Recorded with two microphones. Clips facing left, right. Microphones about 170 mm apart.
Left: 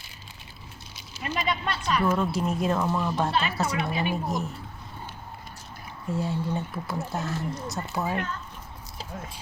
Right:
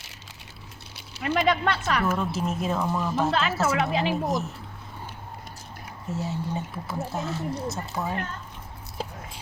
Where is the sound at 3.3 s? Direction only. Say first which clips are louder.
Right 3 dB; 90° right.